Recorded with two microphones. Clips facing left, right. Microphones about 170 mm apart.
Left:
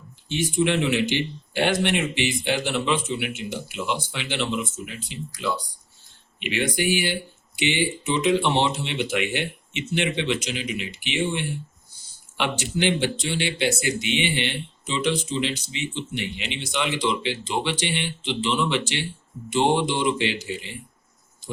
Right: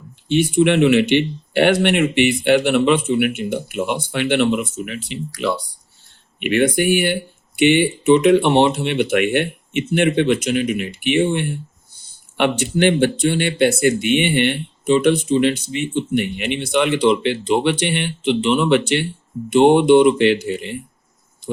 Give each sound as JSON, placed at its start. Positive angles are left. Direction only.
{"t": 0.3, "sound": "speech", "side_deg": -65}
{"t": 6.4, "sound": "speech", "side_deg": -55}